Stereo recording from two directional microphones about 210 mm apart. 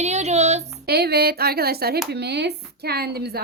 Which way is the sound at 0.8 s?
50° right (ahead or behind).